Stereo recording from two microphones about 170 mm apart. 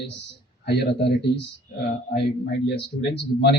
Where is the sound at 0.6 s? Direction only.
85° left.